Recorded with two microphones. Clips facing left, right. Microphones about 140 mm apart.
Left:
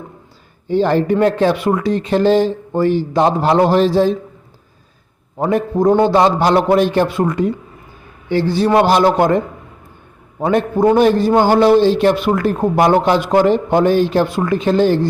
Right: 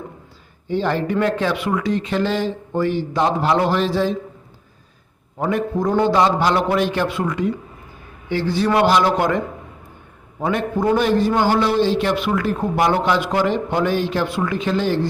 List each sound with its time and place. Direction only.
0.7 s a man's voice: 35° left (ahead or behind)
5.4 s a man's voice: 35° left (ahead or behind)
10.4 s a man's voice: 35° left (ahead or behind)